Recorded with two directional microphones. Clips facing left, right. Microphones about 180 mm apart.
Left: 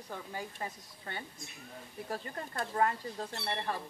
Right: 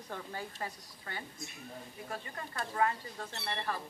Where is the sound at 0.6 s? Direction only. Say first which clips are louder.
Even; 25° left (ahead or behind).